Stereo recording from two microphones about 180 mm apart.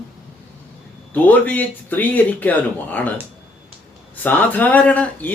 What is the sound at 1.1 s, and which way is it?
Speech, 10° left (ahead or behind).